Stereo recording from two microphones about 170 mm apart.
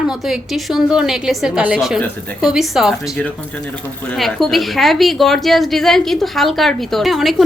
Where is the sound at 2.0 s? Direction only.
10° left (ahead or behind).